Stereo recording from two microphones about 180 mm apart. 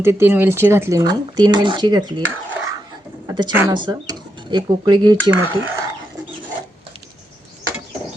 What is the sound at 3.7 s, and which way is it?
Speech, 25° right (ahead or behind).